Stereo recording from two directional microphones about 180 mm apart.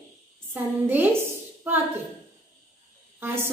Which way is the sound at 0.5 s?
10° right (ahead or behind).